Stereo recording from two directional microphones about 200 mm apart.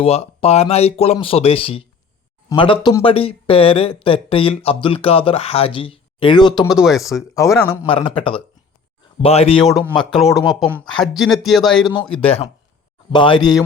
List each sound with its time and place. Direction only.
0.0 s speech: 30° left (ahead or behind)
6.7 s speech: centre (ahead or behind)
7.3 s a man's voice: 15° left (ahead or behind)
7.9 s speech: 25° left (ahead or behind)
9.6 s speech: centre (ahead or behind)
12.2 s speech: 30° left (ahead or behind)